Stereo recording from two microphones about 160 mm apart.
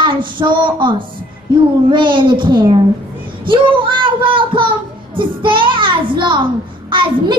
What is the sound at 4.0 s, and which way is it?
A child's voice, 30° right (ahead or behind).